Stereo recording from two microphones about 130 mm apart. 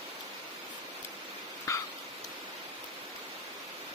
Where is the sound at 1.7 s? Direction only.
25° left (ahead or behind).